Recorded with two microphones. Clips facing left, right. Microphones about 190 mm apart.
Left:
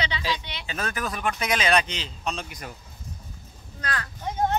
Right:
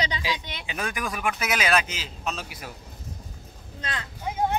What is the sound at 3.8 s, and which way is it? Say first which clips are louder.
Speech: left 3 dB; 20° right (ahead or behind).